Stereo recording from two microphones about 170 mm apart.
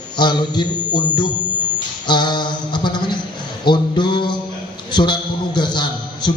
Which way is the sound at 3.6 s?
25° left (ahead or behind).